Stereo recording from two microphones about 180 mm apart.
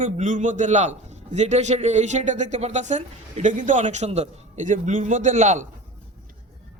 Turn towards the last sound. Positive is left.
turn(degrees=-40)  # may be behind; listen again after turning